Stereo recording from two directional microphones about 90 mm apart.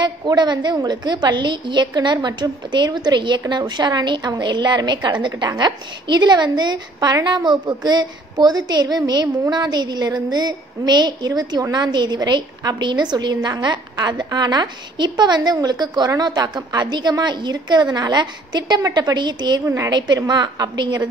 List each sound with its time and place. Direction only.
0.3 s a woman's voice: 55° right (ahead or behind)